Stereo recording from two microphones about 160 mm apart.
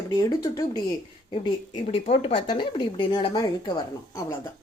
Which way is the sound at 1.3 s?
35° left (ahead or behind).